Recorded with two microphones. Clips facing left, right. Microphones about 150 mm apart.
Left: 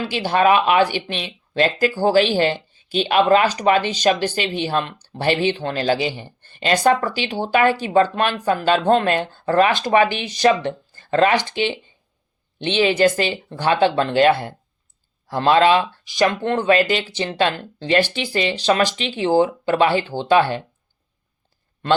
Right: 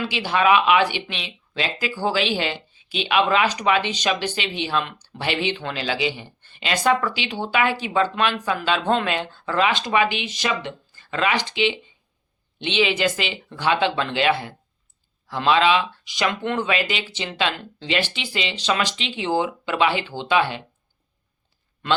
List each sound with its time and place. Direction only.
0.0 s speech: 45° left (ahead or behind)